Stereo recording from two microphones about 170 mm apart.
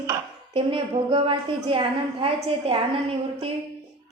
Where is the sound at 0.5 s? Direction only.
30° right (ahead or behind).